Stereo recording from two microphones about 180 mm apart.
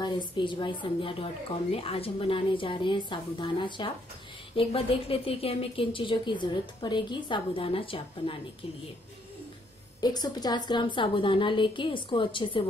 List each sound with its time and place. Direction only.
0.0 s speech: 25° left (ahead or behind)
9.9 s speech: 20° left (ahead or behind)